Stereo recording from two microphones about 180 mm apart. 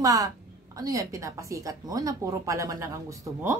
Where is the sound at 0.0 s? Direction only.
20° right (ahead or behind).